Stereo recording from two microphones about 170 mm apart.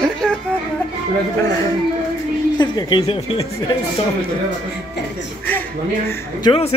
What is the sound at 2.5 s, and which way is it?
Speech, 25° left (ahead or behind).